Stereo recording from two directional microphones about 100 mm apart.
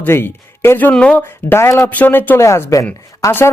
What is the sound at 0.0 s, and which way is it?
Speech, 25° left (ahead or behind).